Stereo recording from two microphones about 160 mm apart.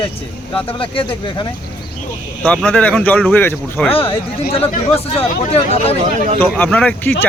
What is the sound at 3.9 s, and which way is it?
Speech, 35° left (ahead or behind).